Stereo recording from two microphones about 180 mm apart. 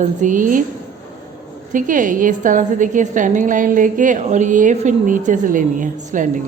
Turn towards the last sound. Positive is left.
turn(degrees=-45)  # may be behind; listen again after turning